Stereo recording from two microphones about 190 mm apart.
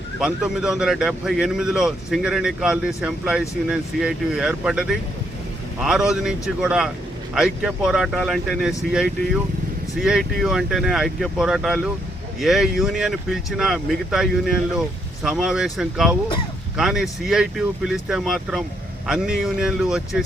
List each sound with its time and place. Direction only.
0.2 s speech: 5° right (ahead or behind)